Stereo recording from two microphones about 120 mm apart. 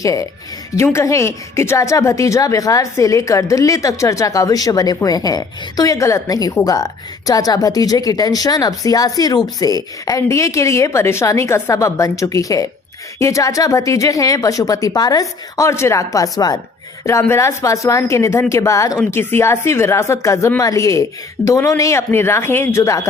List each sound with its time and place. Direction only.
0.0 s a woman's voice: 25° left (ahead or behind)